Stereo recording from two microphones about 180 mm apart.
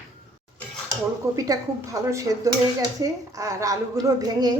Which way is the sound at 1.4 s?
20° right (ahead or behind).